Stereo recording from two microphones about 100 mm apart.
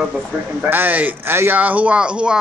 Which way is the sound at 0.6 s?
20° right (ahead or behind).